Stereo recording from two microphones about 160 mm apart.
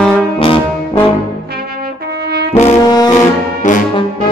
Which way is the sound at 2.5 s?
45° left (ahead or behind).